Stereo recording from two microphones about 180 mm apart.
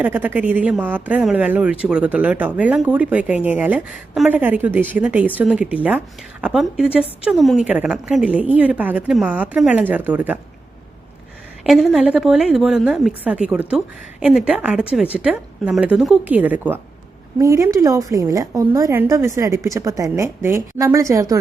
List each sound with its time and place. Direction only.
0.0 s a woman's voice: 10° right (ahead or behind)
11.6 s a woman's voice: centre (ahead or behind); by 21.3 s 15° right (ahead or behind)